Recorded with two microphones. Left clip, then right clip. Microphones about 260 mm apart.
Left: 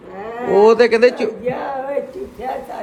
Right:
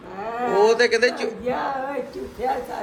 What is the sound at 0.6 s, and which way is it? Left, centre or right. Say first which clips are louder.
Speech: left 7 dB; centre.